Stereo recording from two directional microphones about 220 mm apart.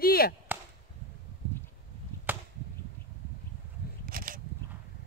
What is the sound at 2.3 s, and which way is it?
Whip, 10° right (ahead or behind).